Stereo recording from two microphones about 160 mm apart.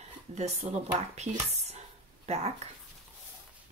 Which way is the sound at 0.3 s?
45° right (ahead or behind).